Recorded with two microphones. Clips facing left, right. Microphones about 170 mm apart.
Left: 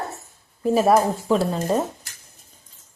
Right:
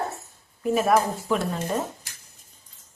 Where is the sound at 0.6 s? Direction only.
35° left (ahead or behind).